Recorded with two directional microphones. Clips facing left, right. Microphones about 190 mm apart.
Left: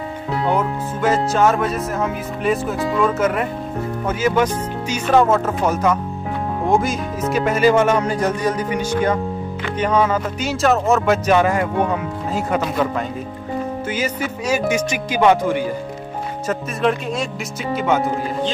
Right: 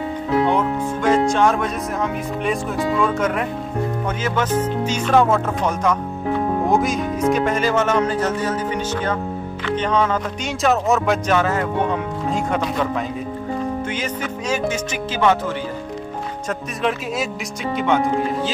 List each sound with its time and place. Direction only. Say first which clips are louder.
0.5 s speech: right 1 dB; 5° left (ahead or behind)
11.3 s speech: left 3 dB; 15° left (ahead or behind)
16.4 s speech: left 4 dB; centre (ahead or behind)